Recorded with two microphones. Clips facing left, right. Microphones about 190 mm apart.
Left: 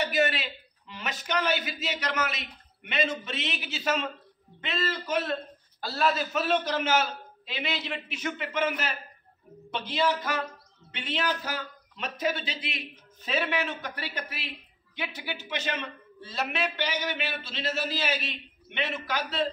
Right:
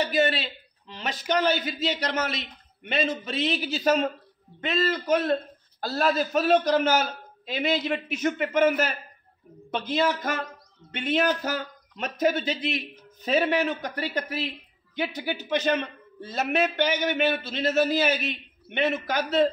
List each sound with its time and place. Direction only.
0.0 s a man's voice: 30° right (ahead or behind)